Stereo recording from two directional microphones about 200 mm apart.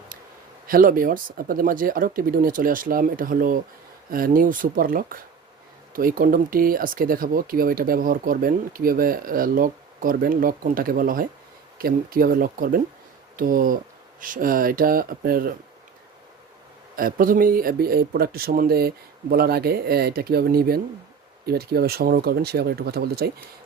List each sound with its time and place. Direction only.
0.7 s speech: 45° right (ahead or behind)
16.9 s speech: 45° right (ahead or behind)